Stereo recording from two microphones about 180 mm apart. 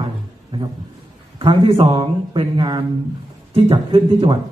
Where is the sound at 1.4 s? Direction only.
30° right (ahead or behind).